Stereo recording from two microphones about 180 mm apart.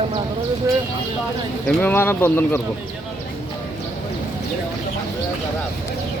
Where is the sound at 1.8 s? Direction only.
10° left (ahead or behind).